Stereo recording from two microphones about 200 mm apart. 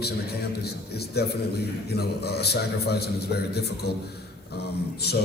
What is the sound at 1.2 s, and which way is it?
A man's voice, 55° left (ahead or behind).